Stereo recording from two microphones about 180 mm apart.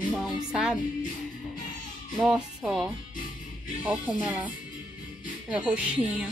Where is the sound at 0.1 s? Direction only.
5° right (ahead or behind).